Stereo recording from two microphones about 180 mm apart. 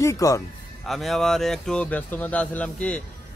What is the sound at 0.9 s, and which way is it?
Speech, centre (ahead or behind).